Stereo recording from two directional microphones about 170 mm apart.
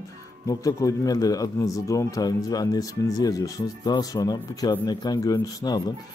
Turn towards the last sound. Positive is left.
turn(degrees=25)  # may be behind; listen again after turning